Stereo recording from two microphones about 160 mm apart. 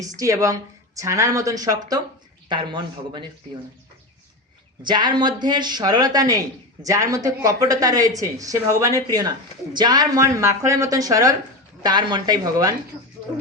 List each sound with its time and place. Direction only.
0.2 s speech: 20° right (ahead or behind)
4.8 s speech: 30° right (ahead or behind)
9.7 s speech: 25° right (ahead or behind)